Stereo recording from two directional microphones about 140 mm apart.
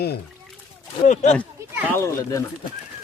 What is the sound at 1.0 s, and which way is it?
Speech, 55° left (ahead or behind).